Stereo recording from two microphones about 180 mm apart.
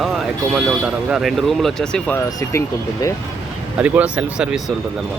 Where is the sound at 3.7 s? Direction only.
10° right (ahead or behind).